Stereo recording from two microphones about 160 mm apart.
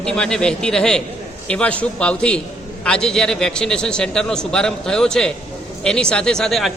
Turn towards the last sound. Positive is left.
turn(degrees=0)  # may be behind; listen again after turning